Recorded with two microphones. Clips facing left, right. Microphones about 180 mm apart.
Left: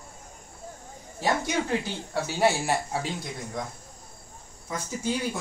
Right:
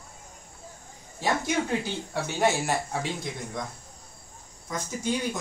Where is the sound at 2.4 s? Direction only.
10° left (ahead or behind).